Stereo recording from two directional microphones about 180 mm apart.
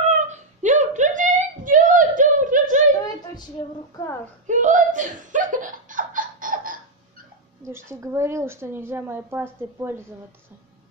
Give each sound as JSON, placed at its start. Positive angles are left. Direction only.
{"t": 0.1, "sound": "whimper", "side_deg": -40}
{"t": 3.9, "sound": "a woman's voice", "side_deg": 15}
{"t": 4.5, "sound": "laughter", "side_deg": -45}
{"t": 7.6, "sound": "a woman's voice", "side_deg": -15}